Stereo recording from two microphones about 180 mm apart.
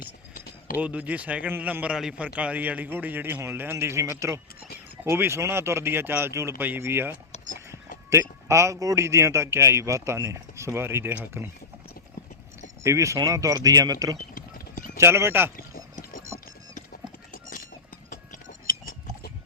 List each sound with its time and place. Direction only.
0.0 s a sound: 50° left (ahead or behind)
0.8 s a man's voice: 10° right (ahead or behind)
12.8 s speech: 15° right (ahead or behind)
14.2 s clip-clop: 45° left (ahead or behind)
14.9 s a man's voice: 15° right (ahead or behind)
15.5 s a sound: 50° left (ahead or behind)
18.1 s clip-clop: 45° left (ahead or behind)